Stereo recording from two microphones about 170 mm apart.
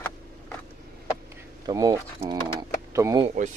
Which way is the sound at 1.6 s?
20° right (ahead or behind).